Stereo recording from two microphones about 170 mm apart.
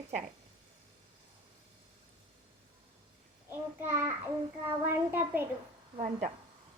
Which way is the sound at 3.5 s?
15° right (ahead or behind).